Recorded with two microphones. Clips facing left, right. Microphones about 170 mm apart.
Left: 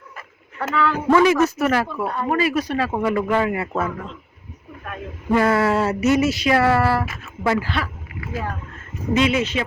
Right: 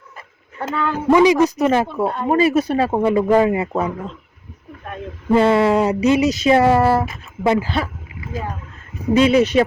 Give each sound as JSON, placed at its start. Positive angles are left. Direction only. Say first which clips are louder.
{"t": 0.7, "sound": "speech", "louder": "right 1 dB", "side_deg": -25}
{"t": 9.2, "sound": "speech", "louder": "right 9 dB", "side_deg": -35}